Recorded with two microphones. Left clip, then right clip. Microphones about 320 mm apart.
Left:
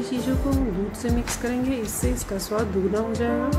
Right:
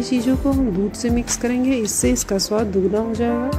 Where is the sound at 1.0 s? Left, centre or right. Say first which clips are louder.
Right 4 dB; centre.